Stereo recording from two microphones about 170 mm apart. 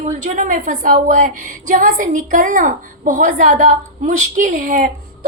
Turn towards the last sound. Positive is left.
turn(degrees=-55)  # may be behind; listen again after turning